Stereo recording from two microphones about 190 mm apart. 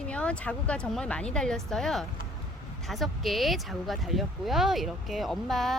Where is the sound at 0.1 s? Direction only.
5° left (ahead or behind).